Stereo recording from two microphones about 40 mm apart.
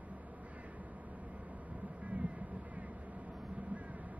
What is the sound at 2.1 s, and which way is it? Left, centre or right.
Vehicle, right.